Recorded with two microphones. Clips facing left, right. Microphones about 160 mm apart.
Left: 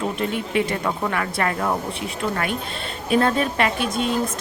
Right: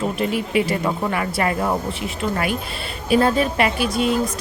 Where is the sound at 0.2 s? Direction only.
5° right (ahead or behind).